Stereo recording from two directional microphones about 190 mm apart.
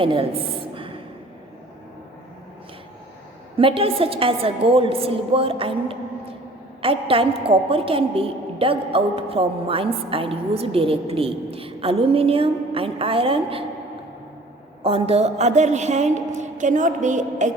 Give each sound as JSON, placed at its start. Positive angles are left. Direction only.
{"t": 0.0, "sound": "a sound", "side_deg": -30}
{"t": 3.6, "sound": "a woman's voice", "side_deg": -30}
{"t": 14.8, "sound": "a woman's voice", "side_deg": -30}